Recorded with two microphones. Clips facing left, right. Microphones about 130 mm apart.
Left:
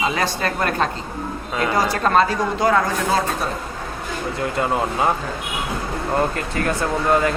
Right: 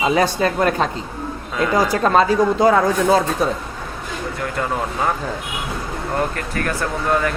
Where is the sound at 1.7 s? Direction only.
10° right (ahead or behind).